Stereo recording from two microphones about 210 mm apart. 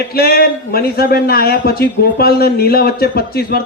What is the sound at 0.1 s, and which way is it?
Speech, 45° left (ahead or behind).